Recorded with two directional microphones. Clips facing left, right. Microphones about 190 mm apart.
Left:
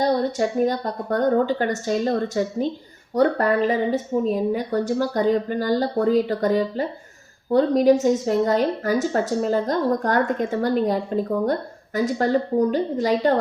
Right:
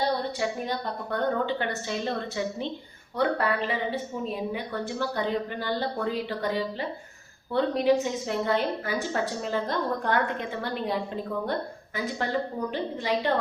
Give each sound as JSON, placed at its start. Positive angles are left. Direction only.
{"t": 0.0, "sound": "a woman's voice", "side_deg": 45}